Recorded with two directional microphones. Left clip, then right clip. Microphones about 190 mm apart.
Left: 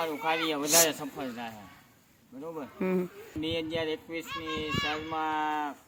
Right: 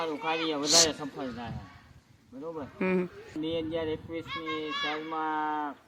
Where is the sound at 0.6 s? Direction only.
10° left (ahead or behind).